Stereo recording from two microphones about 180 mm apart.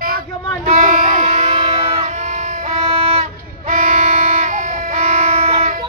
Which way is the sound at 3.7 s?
45° right (ahead or behind).